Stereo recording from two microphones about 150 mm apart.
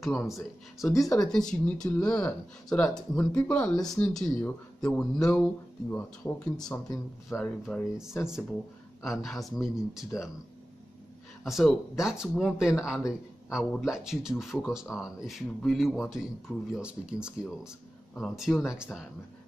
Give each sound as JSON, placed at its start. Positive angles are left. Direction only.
{"t": 0.0, "sound": "speech", "side_deg": 0}
{"t": 0.9, "sound": "speech", "side_deg": 25}
{"t": 1.2, "sound": "speech", "side_deg": 5}
{"t": 11.4, "sound": "speech", "side_deg": 0}